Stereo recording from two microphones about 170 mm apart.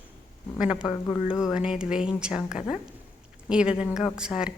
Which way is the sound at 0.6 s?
25° left (ahead or behind).